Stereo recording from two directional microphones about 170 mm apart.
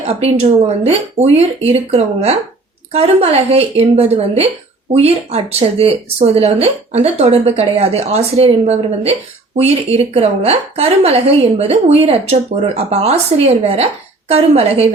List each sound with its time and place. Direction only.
0.0 s a woman's voice: 40° right (ahead or behind)